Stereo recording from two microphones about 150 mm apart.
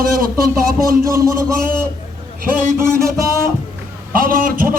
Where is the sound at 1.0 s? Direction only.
20° right (ahead or behind).